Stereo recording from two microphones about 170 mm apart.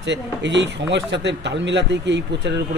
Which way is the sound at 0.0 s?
90° right.